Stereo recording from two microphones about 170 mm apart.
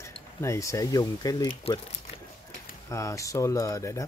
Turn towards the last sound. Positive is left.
turn(degrees=20)  # may be behind; listen again after turning